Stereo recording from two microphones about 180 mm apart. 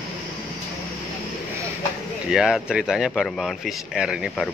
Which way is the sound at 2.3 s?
5° right (ahead or behind).